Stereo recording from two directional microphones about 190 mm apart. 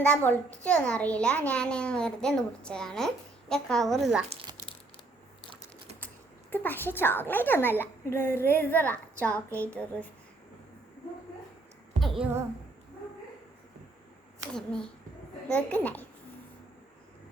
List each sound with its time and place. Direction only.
0.1 s a woman's voice: 10° left (ahead or behind)
4.3 s crumpling: 30° right (ahead or behind)
6.5 s a woman's voice: 10° left (ahead or behind)
11.9 s a sound: centre (ahead or behind)
14.5 s a child's voice: 5° left (ahead or behind)